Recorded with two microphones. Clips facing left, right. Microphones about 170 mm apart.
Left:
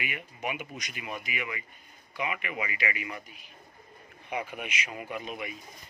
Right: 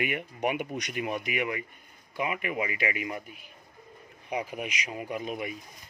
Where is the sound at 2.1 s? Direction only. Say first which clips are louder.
Right 3 dB; 45° right (ahead or behind).